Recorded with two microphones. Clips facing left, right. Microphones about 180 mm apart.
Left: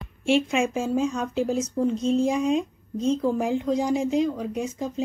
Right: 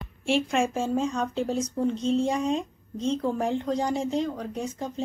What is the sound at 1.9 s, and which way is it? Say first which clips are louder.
Speech: left 2 dB; 30° right (ahead or behind).